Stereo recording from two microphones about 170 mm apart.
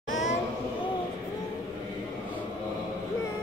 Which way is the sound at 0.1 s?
45° left (ahead or behind).